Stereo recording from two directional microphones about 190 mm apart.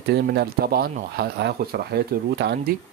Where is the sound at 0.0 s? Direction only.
60° right (ahead or behind).